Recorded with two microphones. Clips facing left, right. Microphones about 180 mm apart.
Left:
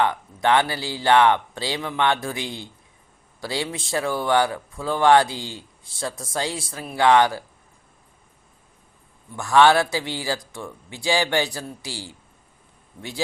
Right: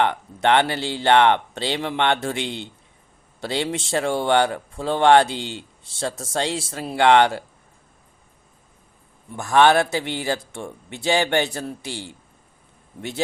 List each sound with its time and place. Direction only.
0.4 s speech: 25° right (ahead or behind)
9.3 s speech: 20° right (ahead or behind)